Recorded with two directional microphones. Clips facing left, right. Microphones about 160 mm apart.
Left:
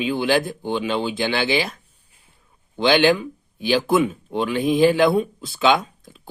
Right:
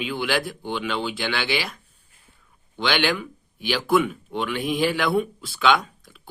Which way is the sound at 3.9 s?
25° left (ahead or behind).